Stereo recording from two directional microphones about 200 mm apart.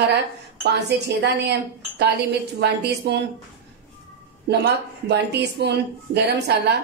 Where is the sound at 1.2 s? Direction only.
55° right (ahead or behind).